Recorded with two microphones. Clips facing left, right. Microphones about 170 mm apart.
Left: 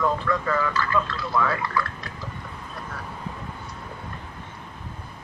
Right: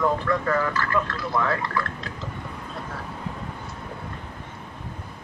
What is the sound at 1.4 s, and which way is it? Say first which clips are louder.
Speech: even; centre (ahead or behind).